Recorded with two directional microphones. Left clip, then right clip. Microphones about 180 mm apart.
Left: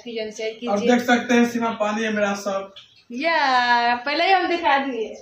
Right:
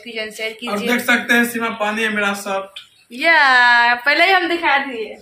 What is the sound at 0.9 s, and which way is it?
Speech, 10° left (ahead or behind).